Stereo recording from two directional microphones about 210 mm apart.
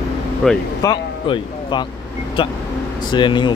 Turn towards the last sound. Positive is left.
turn(degrees=20)  # may be behind; listen again after turning